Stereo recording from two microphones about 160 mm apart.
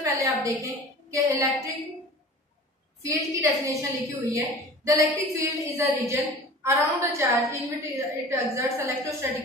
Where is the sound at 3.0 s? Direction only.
20° right (ahead or behind).